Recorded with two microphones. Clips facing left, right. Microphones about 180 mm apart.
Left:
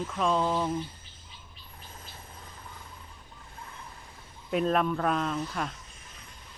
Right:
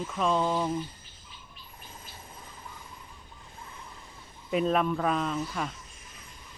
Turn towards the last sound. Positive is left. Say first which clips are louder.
# even
turn(degrees=0)  # may be behind; listen again after turning